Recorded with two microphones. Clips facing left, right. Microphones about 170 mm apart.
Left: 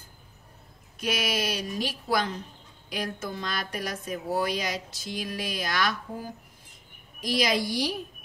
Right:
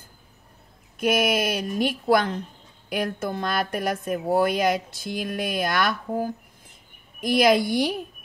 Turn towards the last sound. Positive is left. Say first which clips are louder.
# right 7 dB
turn(degrees=-55)  # may be behind; listen again after turning